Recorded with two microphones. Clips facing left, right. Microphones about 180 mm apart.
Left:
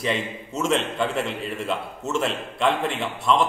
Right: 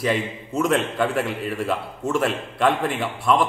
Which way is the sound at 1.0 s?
25° left (ahead or behind).